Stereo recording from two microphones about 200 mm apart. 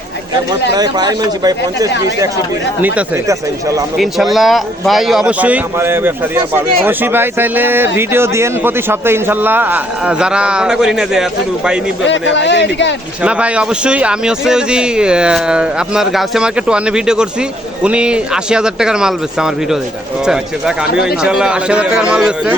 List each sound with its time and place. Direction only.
0.8 s speech: 20° right (ahead or behind)
3.9 s a man's voice: centre (ahead or behind)
12.0 s speech: 65° left (ahead or behind)
13.2 s a man's voice: 5° right (ahead or behind)